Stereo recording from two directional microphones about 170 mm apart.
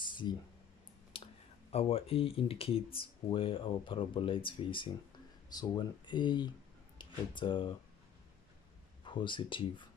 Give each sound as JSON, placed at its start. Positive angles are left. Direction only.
{"t": 0.0, "sound": "a sound", "side_deg": 30}
{"t": 1.7, "sound": "speech", "side_deg": 35}
{"t": 9.0, "sound": "speech", "side_deg": 30}